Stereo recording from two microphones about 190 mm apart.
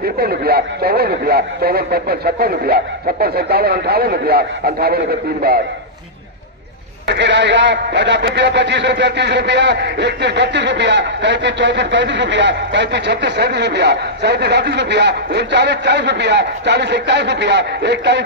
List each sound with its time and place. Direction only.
0.0 s a man's voice: 55° right (ahead or behind)
7.1 s speech: 65° right (ahead or behind)